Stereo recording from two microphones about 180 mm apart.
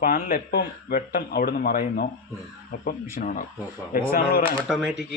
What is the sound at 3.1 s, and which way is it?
A man's voice, 50° left (ahead or behind).